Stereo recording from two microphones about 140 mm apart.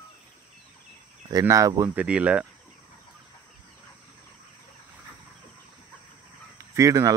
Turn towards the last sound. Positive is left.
turn(degrees=-20)  # may be behind; listen again after turning